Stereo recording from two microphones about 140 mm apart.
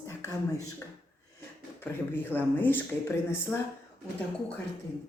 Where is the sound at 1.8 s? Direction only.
15° left (ahead or behind).